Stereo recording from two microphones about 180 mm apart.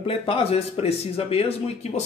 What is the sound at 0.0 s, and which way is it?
Speech, 30° left (ahead or behind).